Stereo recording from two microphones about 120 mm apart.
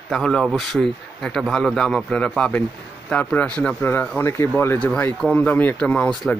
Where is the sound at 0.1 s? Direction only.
5° left (ahead or behind).